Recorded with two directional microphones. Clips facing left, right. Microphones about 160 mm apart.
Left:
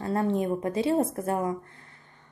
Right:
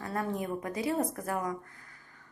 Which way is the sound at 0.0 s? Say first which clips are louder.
Left 7 dB; 25° left (ahead or behind).